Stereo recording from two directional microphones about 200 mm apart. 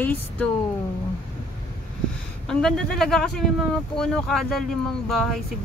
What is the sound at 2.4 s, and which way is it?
Speech, centre (ahead or behind).